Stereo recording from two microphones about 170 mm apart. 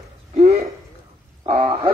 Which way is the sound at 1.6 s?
30° right (ahead or behind).